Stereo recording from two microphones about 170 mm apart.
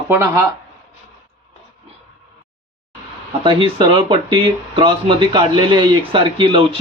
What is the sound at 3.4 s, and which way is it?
Speech, 30° right (ahead or behind).